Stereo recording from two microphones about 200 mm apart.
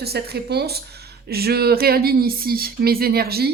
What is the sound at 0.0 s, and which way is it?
A woman's voice, 55° right (ahead or behind).